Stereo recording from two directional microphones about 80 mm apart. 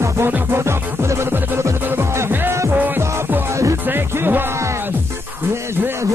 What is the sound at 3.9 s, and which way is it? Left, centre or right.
Music, right.